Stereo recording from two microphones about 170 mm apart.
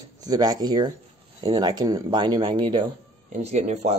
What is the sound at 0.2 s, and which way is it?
Speech, 20° right (ahead or behind).